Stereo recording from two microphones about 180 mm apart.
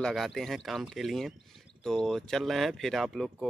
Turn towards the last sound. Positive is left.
turn(degrees=0)  # may be behind; listen again after turning